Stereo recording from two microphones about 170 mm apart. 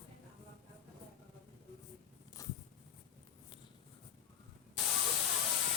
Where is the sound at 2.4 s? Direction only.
20° left (ahead or behind).